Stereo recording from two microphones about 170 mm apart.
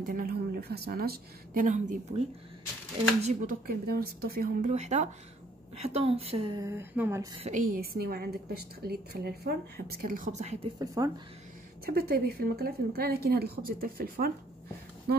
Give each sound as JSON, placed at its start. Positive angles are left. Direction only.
{"t": 0.0, "sound": "a woman's voice", "side_deg": -55}
{"t": 3.6, "sound": "a woman's voice", "side_deg": -65}
{"t": 4.6, "sound": "speech", "side_deg": -40}
{"t": 6.6, "sound": "speech", "side_deg": -15}
{"t": 7.3, "sound": "speech", "side_deg": -40}
{"t": 7.7, "sound": "a woman's voice", "side_deg": -60}
{"t": 11.0, "sound": "speech", "side_deg": -20}
{"t": 11.8, "sound": "a woman's voice", "side_deg": -65}